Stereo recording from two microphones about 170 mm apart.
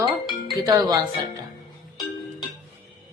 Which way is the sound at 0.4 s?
20° right (ahead or behind).